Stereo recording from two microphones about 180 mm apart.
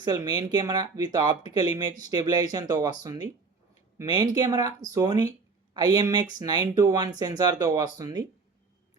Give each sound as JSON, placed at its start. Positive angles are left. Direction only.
{"t": 0.0, "sound": "speech", "side_deg": -20}